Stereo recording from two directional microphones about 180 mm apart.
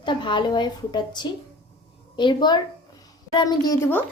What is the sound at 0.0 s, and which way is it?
A woman's voice, 25° left (ahead or behind).